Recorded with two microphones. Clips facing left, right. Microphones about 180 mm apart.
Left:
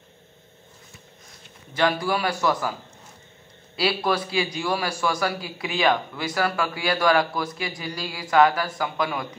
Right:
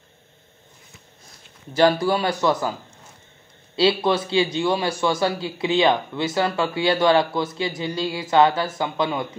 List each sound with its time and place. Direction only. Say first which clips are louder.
1.8 s a man's voice: right 5 dB; 30° right (ahead or behind)
3.7 s a man's voice: right 5 dB; 25° right (ahead or behind)